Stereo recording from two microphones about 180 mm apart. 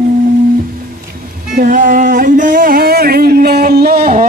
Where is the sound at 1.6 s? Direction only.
45° right (ahead or behind).